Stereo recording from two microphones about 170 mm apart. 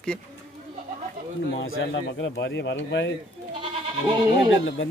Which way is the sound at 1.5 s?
90° left.